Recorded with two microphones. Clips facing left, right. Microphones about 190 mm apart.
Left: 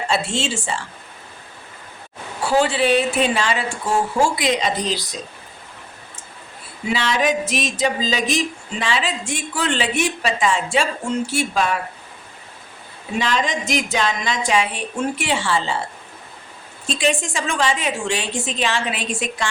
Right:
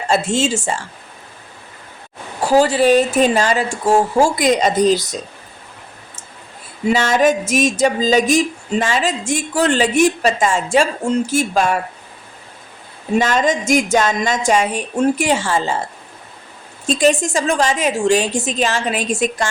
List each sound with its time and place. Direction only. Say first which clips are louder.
0.1 s speech: right 7 dB; 45° right (ahead or behind)
2.4 s a woman's voice: right 5 dB; 40° right (ahead or behind)
6.8 s speech: right 6 dB; 45° right (ahead or behind)
13.1 s speech: right 6 dB; 45° right (ahead or behind)
16.8 s a woman's voice: right 6 dB; 40° right (ahead or behind)